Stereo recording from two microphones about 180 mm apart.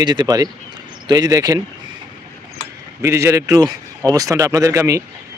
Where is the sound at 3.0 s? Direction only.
15° right (ahead or behind).